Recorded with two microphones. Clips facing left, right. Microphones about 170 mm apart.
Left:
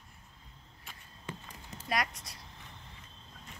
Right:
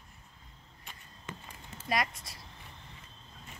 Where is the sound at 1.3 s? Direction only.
30° left (ahead or behind).